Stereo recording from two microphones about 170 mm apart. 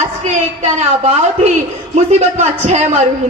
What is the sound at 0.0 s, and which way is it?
A woman's voice, 40° right (ahead or behind).